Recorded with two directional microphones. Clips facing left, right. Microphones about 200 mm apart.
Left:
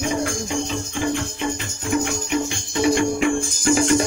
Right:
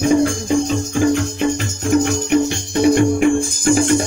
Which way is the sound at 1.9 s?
40° right (ahead or behind).